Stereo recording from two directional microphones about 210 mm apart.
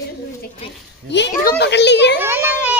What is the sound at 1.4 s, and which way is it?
Speech, 50° left (ahead or behind).